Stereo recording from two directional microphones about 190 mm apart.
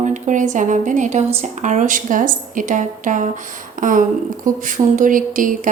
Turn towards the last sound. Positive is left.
turn(degrees=-45)  # may be behind; listen again after turning